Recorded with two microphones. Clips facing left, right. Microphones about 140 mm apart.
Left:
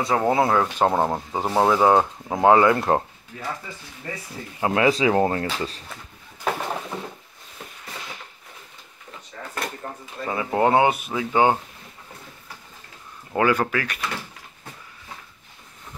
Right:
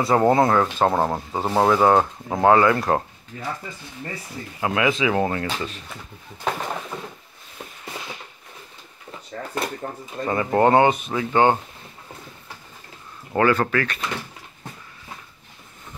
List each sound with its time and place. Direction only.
0.0 s speech: centre (ahead or behind)
2.4 s speech: 20° left (ahead or behind)
4.6 s speech: 30° left (ahead or behind)
6.4 s a sound: 5° left (ahead or behind)
10.2 s speech: 5° left (ahead or behind)
13.4 s speech: 10° left (ahead or behind)